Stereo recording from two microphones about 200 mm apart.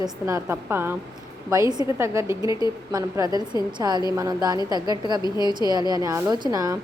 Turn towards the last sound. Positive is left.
turn(degrees=-20)  # may be behind; listen again after turning